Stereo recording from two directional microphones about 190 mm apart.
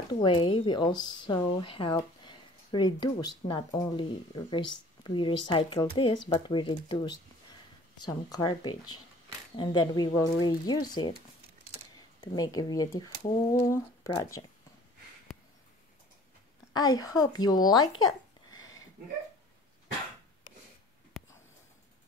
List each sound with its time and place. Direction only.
0.1 s speech: 25° left (ahead or behind)
12.2 s speech: 20° left (ahead or behind)
16.7 s speech: 20° left (ahead or behind)